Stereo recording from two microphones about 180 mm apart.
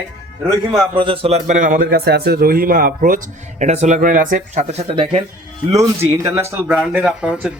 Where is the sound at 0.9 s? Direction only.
30° right (ahead or behind); by 3.2 s 50° right (ahead or behind).